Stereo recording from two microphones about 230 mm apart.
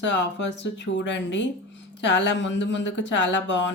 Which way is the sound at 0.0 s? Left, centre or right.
Left.